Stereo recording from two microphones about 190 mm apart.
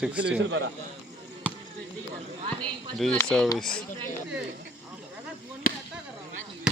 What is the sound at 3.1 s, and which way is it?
Speech, 5° left (ahead or behind).